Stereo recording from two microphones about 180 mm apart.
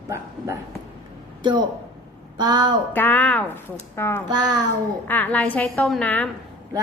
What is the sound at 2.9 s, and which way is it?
A woman's voice, 10° left (ahead or behind).